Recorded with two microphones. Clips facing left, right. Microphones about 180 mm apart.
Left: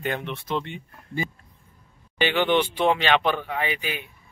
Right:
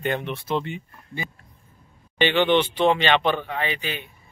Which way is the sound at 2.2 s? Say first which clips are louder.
Right 2 dB; 5° left (ahead or behind).